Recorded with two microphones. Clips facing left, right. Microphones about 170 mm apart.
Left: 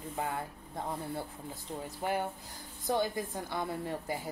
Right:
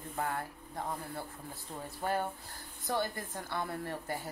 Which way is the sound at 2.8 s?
15° left (ahead or behind).